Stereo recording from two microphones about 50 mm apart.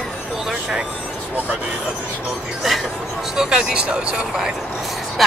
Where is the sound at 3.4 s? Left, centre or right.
Centre.